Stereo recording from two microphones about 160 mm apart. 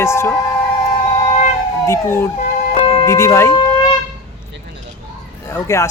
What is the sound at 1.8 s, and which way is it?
Speech, 15° left (ahead or behind).